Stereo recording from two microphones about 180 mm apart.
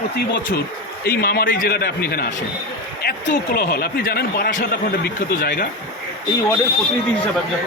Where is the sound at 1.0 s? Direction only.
55° left (ahead or behind).